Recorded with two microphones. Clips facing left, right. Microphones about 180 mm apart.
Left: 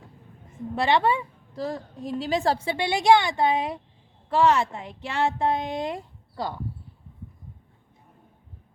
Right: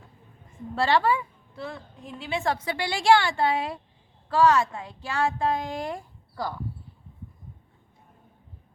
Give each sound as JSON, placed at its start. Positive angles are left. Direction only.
{"t": 0.8, "sound": "a woman's voice", "side_deg": 20}
{"t": 1.5, "sound": "a woman's voice", "side_deg": 35}